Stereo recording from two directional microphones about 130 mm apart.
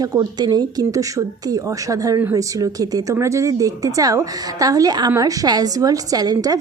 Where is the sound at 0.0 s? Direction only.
30° right (ahead or behind).